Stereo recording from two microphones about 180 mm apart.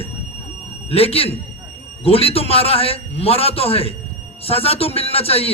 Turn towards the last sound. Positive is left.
turn(degrees=35)  # may be behind; listen again after turning